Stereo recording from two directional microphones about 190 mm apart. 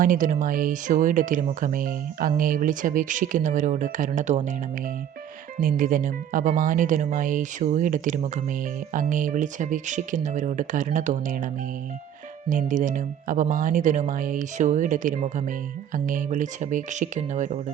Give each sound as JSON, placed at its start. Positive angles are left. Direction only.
{"t": 0.0, "sound": "speech", "side_deg": -45}
{"t": 5.5, "sound": "speech", "side_deg": -45}
{"t": 12.5, "sound": "speech", "side_deg": -45}